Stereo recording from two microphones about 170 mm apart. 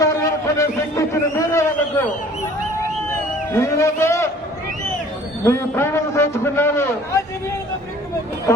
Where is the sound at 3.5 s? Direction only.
15° left (ahead or behind).